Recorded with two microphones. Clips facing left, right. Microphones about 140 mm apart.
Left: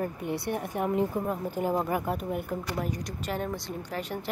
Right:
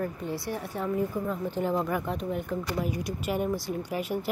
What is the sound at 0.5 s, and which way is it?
Speech, 15° left (ahead or behind).